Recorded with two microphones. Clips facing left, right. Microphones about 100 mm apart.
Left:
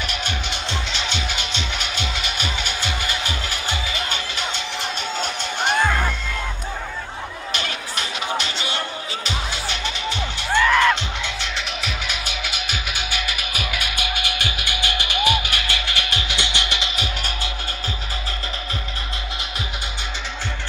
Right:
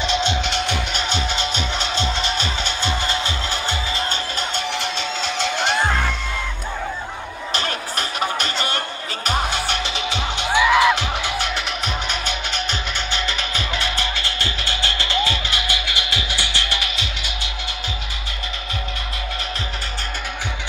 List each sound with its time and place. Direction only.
0.0 s music: 25° right (ahead or behind)
0.4 s music: 70° right (ahead or behind)
0.9 s music: 35° right (ahead or behind)
4.7 s music: 90° right
7.5 s music: 40° right (ahead or behind); by 10.5 s 75° right (ahead or behind)
10.5 s music: 15° right (ahead or behind); by 15.4 s 15° left (ahead or behind)
15.5 s music: 20° right (ahead or behind)
16.3 s music: 20° left (ahead or behind)